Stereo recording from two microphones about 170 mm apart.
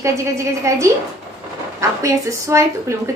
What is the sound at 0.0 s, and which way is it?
A woman's voice, 15° right (ahead or behind).